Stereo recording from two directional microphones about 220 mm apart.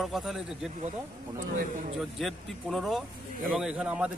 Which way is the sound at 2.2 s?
Centre (ahead or behind).